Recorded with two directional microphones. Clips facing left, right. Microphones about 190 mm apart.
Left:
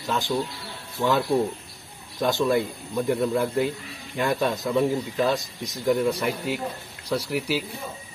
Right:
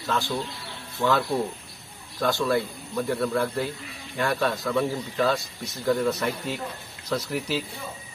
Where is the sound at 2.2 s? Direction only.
20° left (ahead or behind).